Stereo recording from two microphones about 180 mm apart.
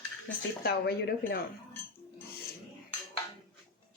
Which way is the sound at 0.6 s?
60° left (ahead or behind).